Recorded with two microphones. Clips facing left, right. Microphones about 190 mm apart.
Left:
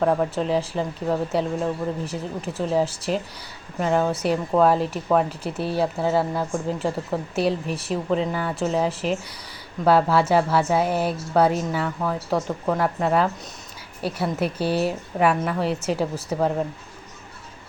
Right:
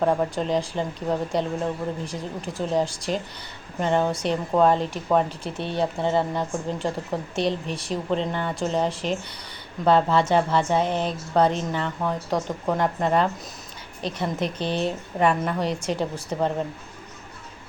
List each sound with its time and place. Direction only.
0.0 s a woman's voice: centre (ahead or behind)